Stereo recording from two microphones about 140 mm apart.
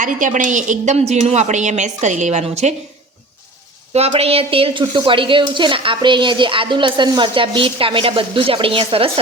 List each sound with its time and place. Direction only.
0.0 s a woman's voice: 65° right (ahead or behind)
3.9 s a woman's voice: 45° right (ahead or behind)